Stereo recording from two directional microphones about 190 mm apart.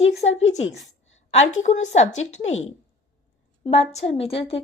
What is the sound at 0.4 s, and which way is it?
A woman's voice, 35° left (ahead or behind).